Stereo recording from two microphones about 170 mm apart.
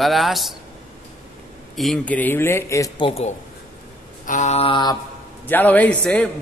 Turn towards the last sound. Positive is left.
turn(degrees=5)  # may be behind; listen again after turning